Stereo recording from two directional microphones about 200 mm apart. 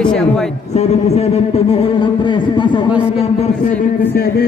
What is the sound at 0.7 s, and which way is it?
Speech, 35° left (ahead or behind).